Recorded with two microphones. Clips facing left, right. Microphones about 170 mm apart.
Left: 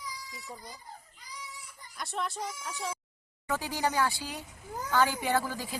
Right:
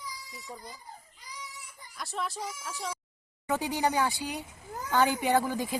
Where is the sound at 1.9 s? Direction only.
Centre (ahead or behind).